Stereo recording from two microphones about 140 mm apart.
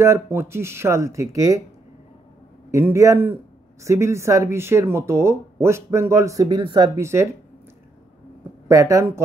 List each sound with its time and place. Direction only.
0.0 s speech: 20° right (ahead or behind)
2.7 s speech: 20° right (ahead or behind)
7.0 s speech: 20° right (ahead or behind)
8.6 s speech: 20° right (ahead or behind)